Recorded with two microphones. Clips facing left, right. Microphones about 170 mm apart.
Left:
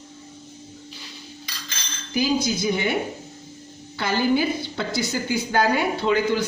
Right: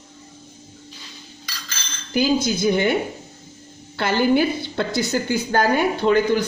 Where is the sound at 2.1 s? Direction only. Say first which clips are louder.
Right 3 dB; 55° right (ahead or behind).